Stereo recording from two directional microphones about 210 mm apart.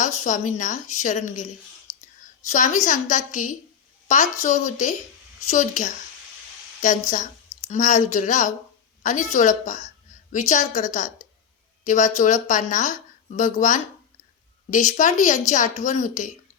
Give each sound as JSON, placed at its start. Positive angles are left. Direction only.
{"t": 0.0, "sound": "speech", "side_deg": 35}
{"t": 1.9, "sound": "whispering", "side_deg": 15}
{"t": 2.5, "sound": "speech", "side_deg": 35}
{"t": 7.7, "sound": "speech", "side_deg": 35}